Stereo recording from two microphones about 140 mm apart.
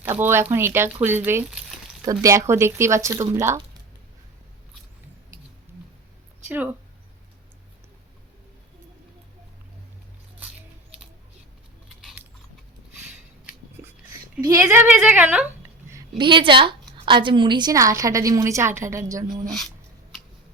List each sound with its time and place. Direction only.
0.2 s a woman's voice: 15° right (ahead or behind)
6.5 s a woman's voice: 15° right (ahead or behind)
13.8 s a sound: 20° right (ahead or behind)
14.4 s a woman's voice: 15° right (ahead or behind)
16.0 s a woman's voice: 35° right (ahead or behind)
19.5 s speech: centre (ahead or behind)